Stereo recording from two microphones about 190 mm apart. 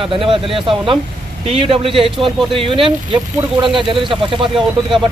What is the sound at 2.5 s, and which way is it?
A man's voice, 25° right (ahead or behind).